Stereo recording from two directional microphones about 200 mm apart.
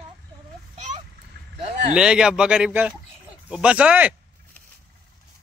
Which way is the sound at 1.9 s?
5° right (ahead or behind).